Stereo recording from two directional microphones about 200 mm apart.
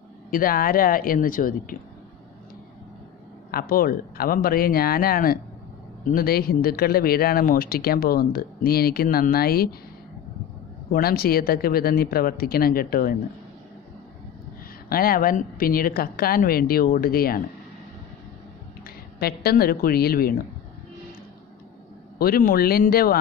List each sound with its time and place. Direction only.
0.3 s speech: 45° left (ahead or behind)
3.5 s speech: 45° left (ahead or behind)
10.9 s speech: 50° left (ahead or behind)
14.9 s speech: 45° left (ahead or behind)
18.9 s a woman's voice: 50° left (ahead or behind)
22.2 s speech: 45° left (ahead or behind)